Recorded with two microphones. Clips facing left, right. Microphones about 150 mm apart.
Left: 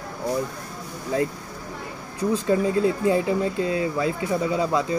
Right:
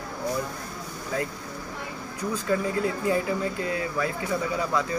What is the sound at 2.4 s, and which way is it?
Speech, 25° left (ahead or behind).